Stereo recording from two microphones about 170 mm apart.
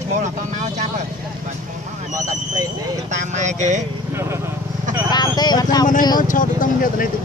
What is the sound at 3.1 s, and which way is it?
Vehicle, 45° right (ahead or behind).